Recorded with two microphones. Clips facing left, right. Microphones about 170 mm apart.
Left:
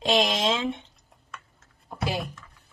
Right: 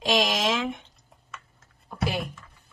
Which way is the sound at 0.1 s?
30° left (ahead or behind).